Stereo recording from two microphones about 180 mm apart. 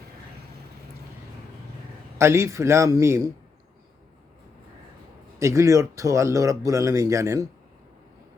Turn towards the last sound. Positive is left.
turn(degrees=-15)  # may be behind; listen again after turning